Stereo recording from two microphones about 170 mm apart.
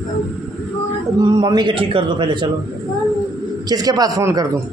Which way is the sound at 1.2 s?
25° right (ahead or behind).